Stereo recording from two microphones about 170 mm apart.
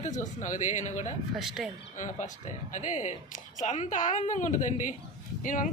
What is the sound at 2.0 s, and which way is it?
A woman's voice, 45° left (ahead or behind).